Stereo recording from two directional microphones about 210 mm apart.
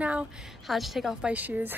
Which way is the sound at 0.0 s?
5° right (ahead or behind).